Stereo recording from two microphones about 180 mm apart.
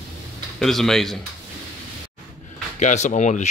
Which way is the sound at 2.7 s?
40° left (ahead or behind).